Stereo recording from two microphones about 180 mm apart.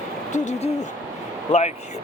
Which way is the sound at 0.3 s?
40° left (ahead or behind).